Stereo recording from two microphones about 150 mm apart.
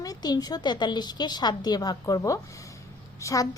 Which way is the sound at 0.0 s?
25° left (ahead or behind).